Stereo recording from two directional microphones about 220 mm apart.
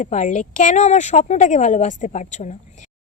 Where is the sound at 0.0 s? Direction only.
35° left (ahead or behind).